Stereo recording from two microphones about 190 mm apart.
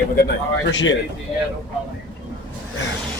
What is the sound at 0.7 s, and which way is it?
Speech, 75° left (ahead or behind).